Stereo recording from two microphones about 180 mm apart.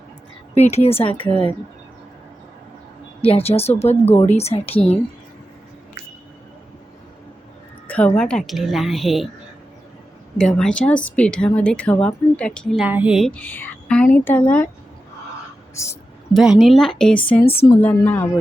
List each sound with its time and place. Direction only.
0.5 s speech: 40° left (ahead or behind)
3.2 s speech: 30° left (ahead or behind)
7.9 s speech: 5° left (ahead or behind)
10.3 s speech: 5° left (ahead or behind)
15.7 s speech: 15° left (ahead or behind)
16.3 s a woman's voice: centre (ahead or behind)